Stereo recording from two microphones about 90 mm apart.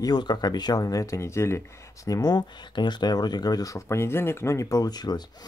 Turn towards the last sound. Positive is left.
turn(degrees=50)  # may be behind; listen again after turning